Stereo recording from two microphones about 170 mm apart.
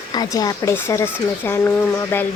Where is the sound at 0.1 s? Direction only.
25° left (ahead or behind).